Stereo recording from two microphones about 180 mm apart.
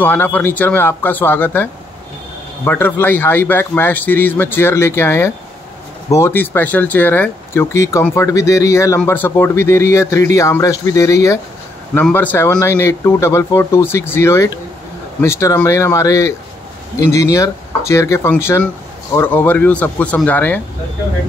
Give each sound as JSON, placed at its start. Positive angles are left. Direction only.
{"t": 0.0, "sound": "a man's voice", "side_deg": 10}